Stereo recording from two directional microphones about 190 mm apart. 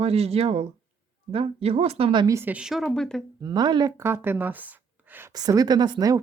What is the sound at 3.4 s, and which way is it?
Speech, 20° right (ahead or behind).